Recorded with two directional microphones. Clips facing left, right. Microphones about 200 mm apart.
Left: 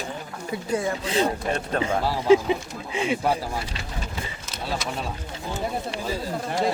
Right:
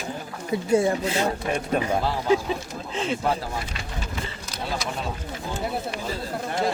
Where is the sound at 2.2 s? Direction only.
20° left (ahead or behind).